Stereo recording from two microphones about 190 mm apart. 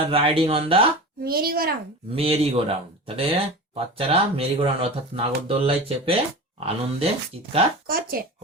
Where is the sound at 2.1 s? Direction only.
30° right (ahead or behind).